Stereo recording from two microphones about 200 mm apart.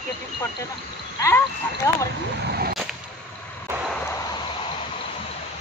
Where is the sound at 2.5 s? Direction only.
50° right (ahead or behind).